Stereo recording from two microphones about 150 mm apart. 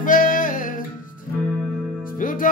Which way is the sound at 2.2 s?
65° left (ahead or behind).